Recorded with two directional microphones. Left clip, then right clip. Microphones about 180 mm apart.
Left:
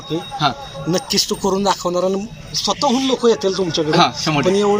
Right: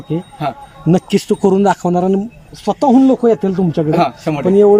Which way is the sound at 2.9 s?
45° right (ahead or behind).